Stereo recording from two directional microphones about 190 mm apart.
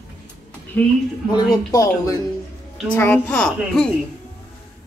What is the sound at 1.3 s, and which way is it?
A woman's voice, 20° left (ahead or behind).